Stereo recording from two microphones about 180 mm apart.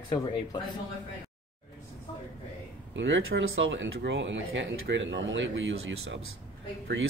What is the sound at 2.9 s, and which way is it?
Speech, 90° right.